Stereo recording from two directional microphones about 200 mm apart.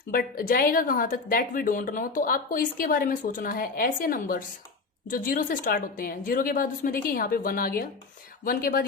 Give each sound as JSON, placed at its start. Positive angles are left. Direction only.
{"t": 0.1, "sound": "a woman's voice", "side_deg": 45}